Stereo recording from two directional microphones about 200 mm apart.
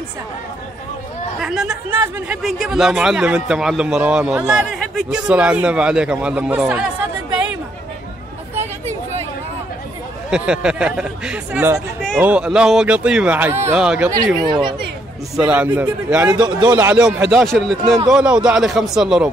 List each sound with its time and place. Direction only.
1.4 s a man's voice: 5° right (ahead or behind)
10.3 s a man's voice: 5° right (ahead or behind); by 14.8 s 25° right (ahead or behind)
15.3 s speech: 5° right (ahead or behind)
16.3 s a man's voice: 20° right (ahead or behind)
16.7 s a man's voice: 10° right (ahead or behind)